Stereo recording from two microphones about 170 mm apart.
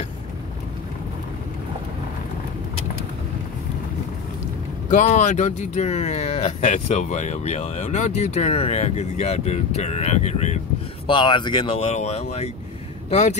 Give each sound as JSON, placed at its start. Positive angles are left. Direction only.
{"t": 4.9, "sound": "speech", "side_deg": 45}
{"t": 11.1, "sound": "speech", "side_deg": 30}